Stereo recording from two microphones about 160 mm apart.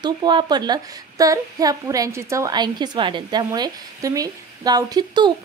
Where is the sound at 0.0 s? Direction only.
25° right (ahead or behind).